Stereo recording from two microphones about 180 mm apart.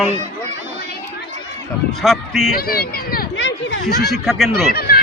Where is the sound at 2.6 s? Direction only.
55° left (ahead or behind); by 3.7 s 90° left.